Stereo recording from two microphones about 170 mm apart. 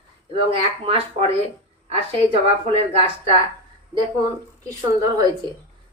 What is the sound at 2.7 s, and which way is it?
Speech, 30° right (ahead or behind).